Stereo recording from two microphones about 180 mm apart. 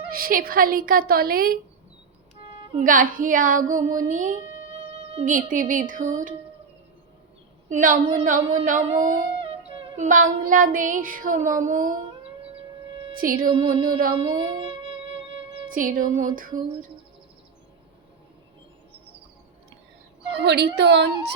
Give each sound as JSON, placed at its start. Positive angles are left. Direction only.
{"t": 0.1, "sound": "child singing", "side_deg": -55}
{"t": 2.7, "sound": "child singing", "side_deg": -50}
{"t": 4.9, "sound": "music", "side_deg": -35}
{"t": 5.2, "sound": "child singing", "side_deg": -45}
{"t": 7.7, "sound": "child singing", "side_deg": -45}
{"t": 9.0, "sound": "dog", "side_deg": -30}
{"t": 10.1, "sound": "child singing", "side_deg": -45}
{"t": 12.4, "sound": "music", "side_deg": -30}
{"t": 13.1, "sound": "child singing", "side_deg": -50}
{"t": 14.2, "sound": "music", "side_deg": -30}
{"t": 15.7, "sound": "child singing", "side_deg": -50}
{"t": 20.3, "sound": "a woman's voice", "side_deg": -70}